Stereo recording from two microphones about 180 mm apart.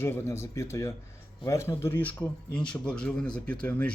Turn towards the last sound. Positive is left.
turn(degrees=5)  # may be behind; listen again after turning